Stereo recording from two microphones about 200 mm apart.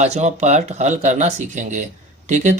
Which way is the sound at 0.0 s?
35° right (ahead or behind).